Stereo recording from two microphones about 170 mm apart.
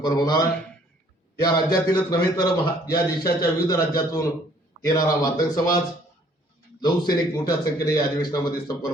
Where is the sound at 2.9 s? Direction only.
65° left (ahead or behind).